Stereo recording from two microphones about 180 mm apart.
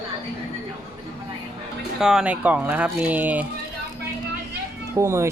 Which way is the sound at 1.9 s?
5° right (ahead or behind).